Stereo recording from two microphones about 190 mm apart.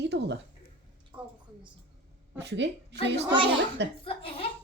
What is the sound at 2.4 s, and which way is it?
Speech, 65° right (ahead or behind).